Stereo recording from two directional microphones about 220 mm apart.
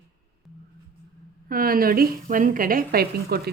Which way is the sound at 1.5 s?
40° right (ahead or behind).